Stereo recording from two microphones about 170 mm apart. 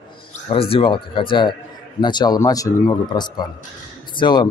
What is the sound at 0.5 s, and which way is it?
Speech, 35° left (ahead or behind).